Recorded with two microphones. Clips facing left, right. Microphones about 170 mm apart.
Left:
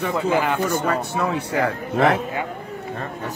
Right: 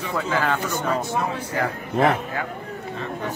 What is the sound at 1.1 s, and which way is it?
Speech, 70° left (ahead or behind).